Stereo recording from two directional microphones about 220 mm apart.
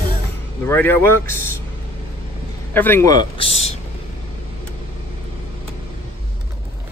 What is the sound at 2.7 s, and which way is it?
Speech, 10° left (ahead or behind).